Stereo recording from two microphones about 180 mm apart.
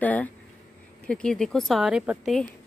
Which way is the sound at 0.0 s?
10° left (ahead or behind).